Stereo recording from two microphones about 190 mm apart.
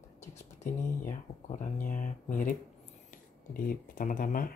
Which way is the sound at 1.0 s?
40° left (ahead or behind).